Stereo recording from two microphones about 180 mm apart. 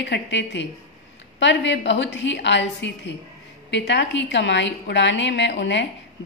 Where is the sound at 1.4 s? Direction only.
90° left.